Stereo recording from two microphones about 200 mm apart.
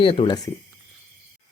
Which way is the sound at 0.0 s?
25° left (ahead or behind).